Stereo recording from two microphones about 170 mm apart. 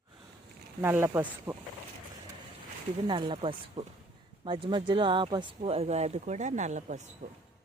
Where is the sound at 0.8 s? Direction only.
15° right (ahead or behind).